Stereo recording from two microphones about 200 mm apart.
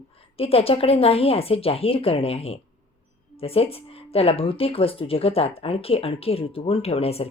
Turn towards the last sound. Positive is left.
turn(degrees=30)  # may be behind; listen again after turning